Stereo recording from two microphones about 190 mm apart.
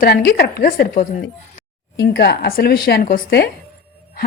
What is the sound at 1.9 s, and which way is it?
Speech, 55° left (ahead or behind).